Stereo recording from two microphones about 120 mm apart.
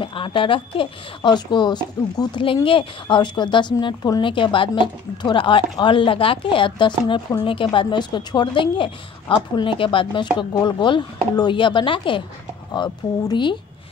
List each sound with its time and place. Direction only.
0.0 s a woman's voice: 45° left (ahead or behind)